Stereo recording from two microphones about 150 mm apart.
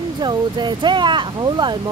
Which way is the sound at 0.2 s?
30° right (ahead or behind).